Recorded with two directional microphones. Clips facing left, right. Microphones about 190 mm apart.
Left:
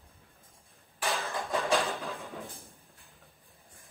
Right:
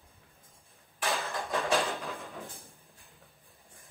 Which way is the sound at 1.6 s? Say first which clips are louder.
Even; centre (ahead or behind).